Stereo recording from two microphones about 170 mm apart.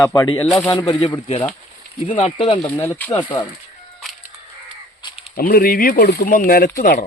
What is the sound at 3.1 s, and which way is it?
Speech, 25° left (ahead or behind).